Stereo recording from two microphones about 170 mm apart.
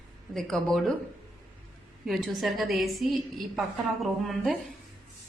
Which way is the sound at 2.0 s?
Centre (ahead or behind).